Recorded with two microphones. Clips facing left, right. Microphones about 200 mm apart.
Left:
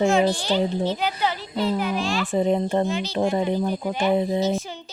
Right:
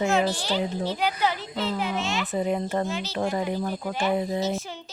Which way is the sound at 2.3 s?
25° left (ahead or behind).